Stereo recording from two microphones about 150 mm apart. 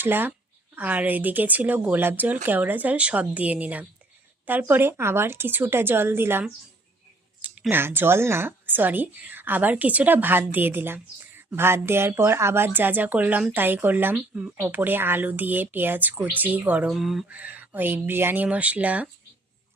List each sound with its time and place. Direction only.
0.0 s speech: 15° right (ahead or behind)
7.4 s speech: 10° right (ahead or behind)